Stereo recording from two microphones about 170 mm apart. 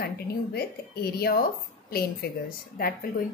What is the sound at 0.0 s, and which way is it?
A woman's voice, 65° left (ahead or behind).